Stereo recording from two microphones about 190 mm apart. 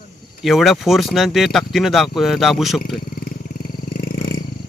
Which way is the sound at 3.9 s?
55° left (ahead or behind).